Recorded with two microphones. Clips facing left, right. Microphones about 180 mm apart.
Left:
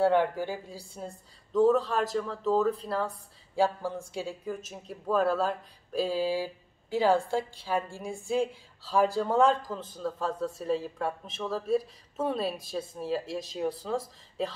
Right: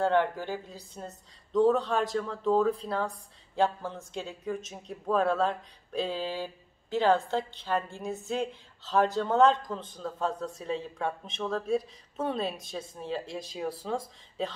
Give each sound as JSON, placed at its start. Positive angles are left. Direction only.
{"t": 0.0, "sound": "speech", "side_deg": 10}